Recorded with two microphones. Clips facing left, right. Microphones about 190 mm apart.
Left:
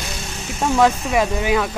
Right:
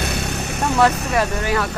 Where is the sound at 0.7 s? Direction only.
15° left (ahead or behind).